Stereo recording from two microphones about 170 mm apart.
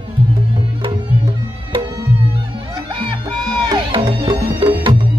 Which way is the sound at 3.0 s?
25° right (ahead or behind).